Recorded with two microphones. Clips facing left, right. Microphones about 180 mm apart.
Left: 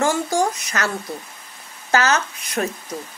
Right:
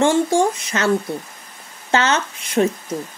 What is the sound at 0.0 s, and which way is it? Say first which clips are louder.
Speech: right 4 dB; 30° right (ahead or behind).